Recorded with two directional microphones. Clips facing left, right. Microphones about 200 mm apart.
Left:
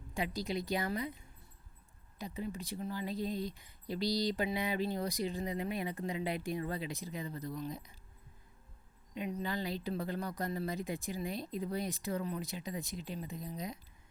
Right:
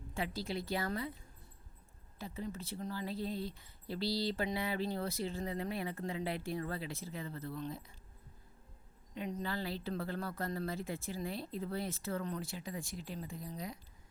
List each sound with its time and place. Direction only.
0.1 s speech: 15° left (ahead or behind)
2.1 s speech: 15° left (ahead or behind)
9.1 s speech: 15° left (ahead or behind)